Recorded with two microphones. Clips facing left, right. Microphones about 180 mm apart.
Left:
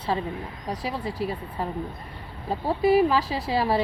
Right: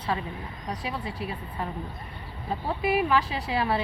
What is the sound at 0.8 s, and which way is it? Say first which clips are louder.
Speech: left 5 dB; 40° left (ahead or behind).